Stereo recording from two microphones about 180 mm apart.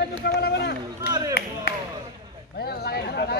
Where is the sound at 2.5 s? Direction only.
60° left (ahead or behind).